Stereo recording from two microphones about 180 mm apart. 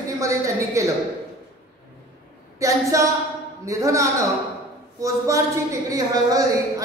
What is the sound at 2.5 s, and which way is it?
A woman's voice, 15° right (ahead or behind).